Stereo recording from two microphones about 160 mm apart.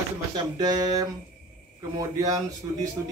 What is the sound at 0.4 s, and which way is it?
Speech, 25° right (ahead or behind).